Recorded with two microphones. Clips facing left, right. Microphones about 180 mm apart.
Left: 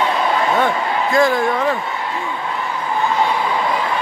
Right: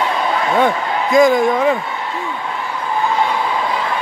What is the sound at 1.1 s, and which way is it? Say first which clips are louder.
Speech: right 5 dB; 15° right (ahead or behind).